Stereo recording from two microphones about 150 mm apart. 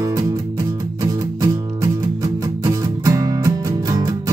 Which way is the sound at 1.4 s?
25° right (ahead or behind).